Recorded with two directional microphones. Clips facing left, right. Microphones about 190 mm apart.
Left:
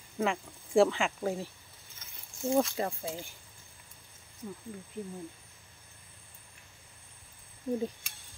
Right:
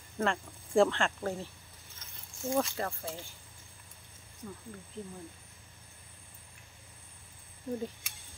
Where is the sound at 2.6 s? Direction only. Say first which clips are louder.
Left 3 dB; 15° left (ahead or behind).